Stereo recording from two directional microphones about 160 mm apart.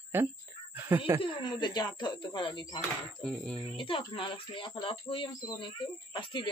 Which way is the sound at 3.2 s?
5° left (ahead or behind).